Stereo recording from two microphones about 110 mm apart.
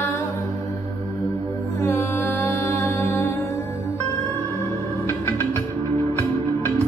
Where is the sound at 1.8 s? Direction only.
25° left (ahead or behind).